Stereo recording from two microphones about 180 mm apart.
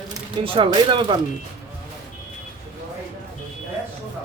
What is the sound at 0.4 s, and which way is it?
Speech, 30° right (ahead or behind).